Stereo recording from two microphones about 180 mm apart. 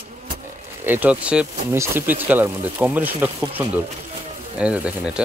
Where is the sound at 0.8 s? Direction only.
10° right (ahead or behind).